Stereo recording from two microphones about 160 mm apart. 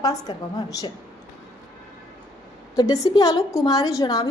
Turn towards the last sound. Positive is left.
turn(degrees=25)  # may be behind; listen again after turning